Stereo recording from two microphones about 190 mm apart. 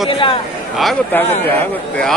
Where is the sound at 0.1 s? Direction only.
25° left (ahead or behind).